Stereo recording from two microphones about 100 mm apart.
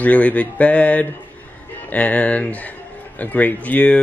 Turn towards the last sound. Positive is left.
turn(degrees=15)  # may be behind; listen again after turning